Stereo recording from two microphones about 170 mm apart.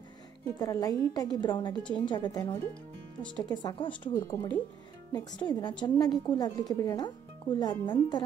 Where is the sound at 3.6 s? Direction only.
30° left (ahead or behind).